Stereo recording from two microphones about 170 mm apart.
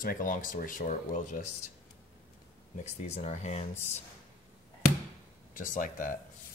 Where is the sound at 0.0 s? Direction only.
55° left (ahead or behind).